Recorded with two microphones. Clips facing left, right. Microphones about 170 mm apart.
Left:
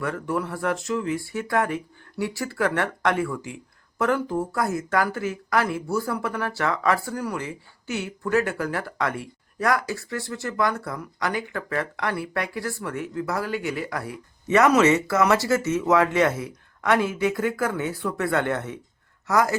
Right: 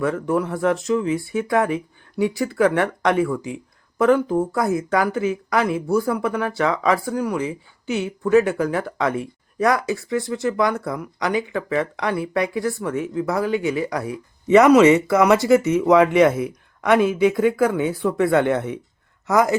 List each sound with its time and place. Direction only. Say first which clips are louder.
0.0 s speech: right 6 dB; 20° right (ahead or behind)